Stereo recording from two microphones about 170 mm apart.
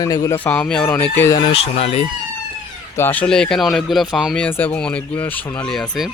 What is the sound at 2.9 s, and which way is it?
Speech, 10° left (ahead or behind).